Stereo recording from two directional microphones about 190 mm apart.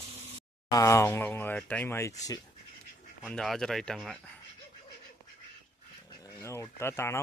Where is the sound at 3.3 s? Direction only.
Centre (ahead or behind).